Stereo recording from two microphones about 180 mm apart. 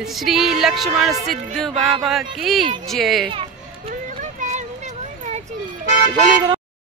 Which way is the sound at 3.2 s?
30° right (ahead or behind).